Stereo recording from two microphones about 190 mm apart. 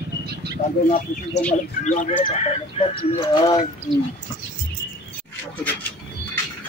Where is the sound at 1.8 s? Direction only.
40° left (ahead or behind); by 3.6 s 25° left (ahead or behind).